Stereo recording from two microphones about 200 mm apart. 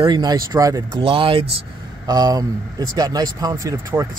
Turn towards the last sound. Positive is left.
turn(degrees=-15)  # may be behind; listen again after turning